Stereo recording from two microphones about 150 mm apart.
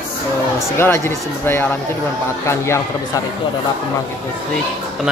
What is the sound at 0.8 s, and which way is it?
Speech, 15° left (ahead or behind).